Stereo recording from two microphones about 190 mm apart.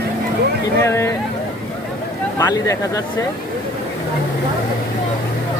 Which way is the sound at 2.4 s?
20° left (ahead or behind).